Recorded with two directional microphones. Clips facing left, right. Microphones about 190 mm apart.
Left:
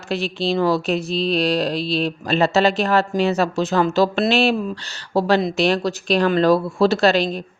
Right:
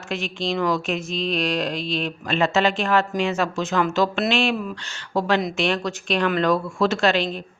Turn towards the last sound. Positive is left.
turn(degrees=40)  # may be behind; listen again after turning